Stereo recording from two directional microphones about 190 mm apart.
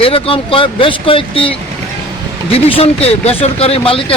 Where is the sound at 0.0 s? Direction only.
30° left (ahead or behind).